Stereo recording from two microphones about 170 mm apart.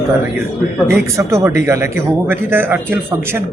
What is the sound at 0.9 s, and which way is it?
A man's voice, 15° right (ahead or behind).